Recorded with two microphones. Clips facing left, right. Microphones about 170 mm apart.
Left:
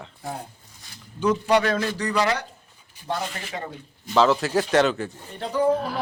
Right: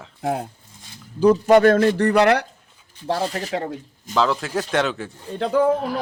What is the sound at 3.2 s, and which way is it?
Speech, 40° right (ahead or behind).